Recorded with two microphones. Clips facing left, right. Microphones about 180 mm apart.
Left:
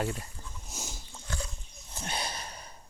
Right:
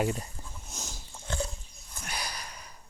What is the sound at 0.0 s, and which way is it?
Speech, 20° right (ahead or behind).